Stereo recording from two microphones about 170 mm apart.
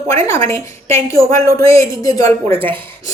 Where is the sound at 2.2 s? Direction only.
40° right (ahead or behind).